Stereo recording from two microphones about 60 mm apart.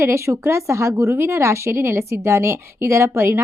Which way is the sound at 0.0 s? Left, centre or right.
Right.